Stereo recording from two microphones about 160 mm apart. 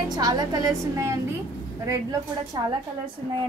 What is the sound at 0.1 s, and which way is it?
A woman's voice, 25° right (ahead or behind).